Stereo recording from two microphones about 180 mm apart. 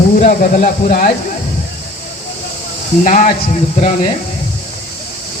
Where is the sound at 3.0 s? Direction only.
45° left (ahead or behind).